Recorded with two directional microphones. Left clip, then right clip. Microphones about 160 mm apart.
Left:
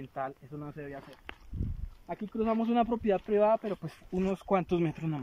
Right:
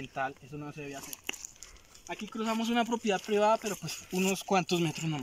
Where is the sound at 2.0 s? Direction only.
30° left (ahead or behind); by 3.8 s 10° left (ahead or behind).